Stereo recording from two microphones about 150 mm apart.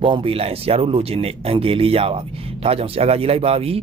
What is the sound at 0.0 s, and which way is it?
Speech, 35° right (ahead or behind).